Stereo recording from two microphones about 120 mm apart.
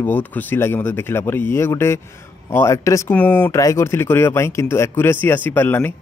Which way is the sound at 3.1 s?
10° left (ahead or behind).